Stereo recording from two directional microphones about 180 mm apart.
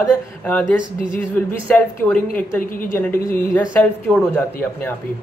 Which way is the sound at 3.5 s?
10° left (ahead or behind).